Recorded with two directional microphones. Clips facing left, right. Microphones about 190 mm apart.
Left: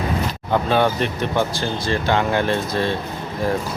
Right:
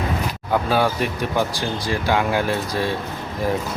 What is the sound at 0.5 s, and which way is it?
Speech, 5° right (ahead or behind).